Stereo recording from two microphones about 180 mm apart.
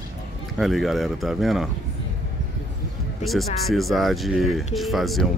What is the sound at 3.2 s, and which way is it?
Speech, centre (ahead or behind).